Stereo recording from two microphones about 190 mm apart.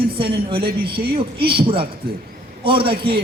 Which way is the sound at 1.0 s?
30° right (ahead or behind).